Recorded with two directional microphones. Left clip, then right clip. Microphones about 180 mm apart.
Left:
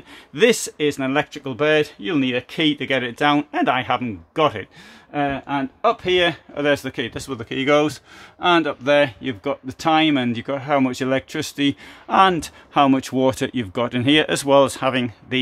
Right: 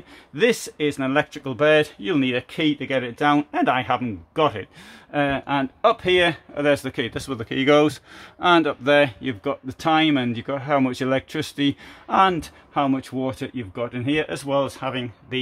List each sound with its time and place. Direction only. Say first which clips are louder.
0.3 s speech: left 3 dB; 10° left (ahead or behind)
5.1 s speech: right 1 dB; 10° right (ahead or behind); by 12.4 s 10° left (ahead or behind)
12.7 s speech: left 6 dB; 35° left (ahead or behind)